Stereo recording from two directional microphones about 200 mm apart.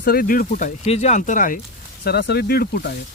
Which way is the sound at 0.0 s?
45° left (ahead or behind).